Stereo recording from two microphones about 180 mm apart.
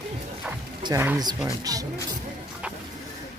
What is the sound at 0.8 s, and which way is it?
Speech, 15° right (ahead or behind).